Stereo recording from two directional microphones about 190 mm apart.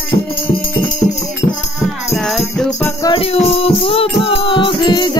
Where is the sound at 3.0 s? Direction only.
30° left (ahead or behind).